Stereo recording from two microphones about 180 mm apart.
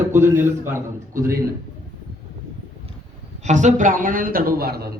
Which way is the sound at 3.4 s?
40° right (ahead or behind).